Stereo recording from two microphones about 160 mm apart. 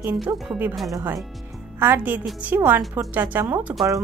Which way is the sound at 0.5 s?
10° right (ahead or behind).